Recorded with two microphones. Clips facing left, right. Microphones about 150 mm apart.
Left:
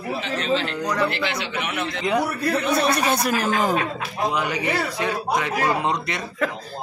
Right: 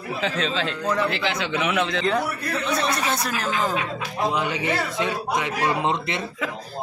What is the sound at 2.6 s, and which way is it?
Speech, 10° left (ahead or behind).